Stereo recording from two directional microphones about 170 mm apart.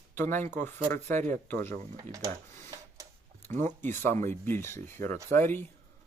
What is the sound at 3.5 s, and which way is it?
Speech, 45° right (ahead or behind).